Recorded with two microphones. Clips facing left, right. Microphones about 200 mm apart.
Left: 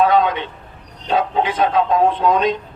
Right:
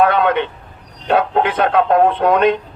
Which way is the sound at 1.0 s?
60° right (ahead or behind).